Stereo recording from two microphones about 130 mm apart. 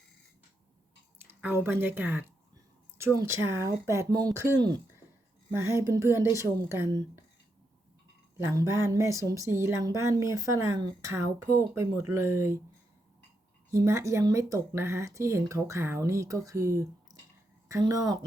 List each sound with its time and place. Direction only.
1.2 s speech: 15° right (ahead or behind)
8.4 s speech: 20° right (ahead or behind)
13.7 s speech: 20° right (ahead or behind)